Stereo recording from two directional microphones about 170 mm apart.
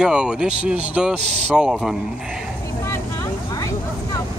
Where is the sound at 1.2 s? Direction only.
40° right (ahead or behind).